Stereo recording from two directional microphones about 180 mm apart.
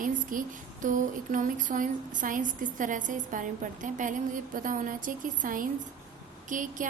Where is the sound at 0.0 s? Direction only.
50° right (ahead or behind).